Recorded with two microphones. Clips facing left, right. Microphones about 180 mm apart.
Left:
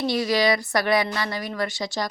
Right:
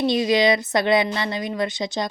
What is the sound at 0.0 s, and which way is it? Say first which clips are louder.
Speech: right 3 dB; 20° right (ahead or behind).